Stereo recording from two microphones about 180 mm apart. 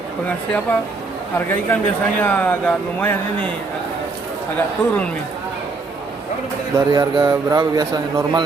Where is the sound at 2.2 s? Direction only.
10° left (ahead or behind).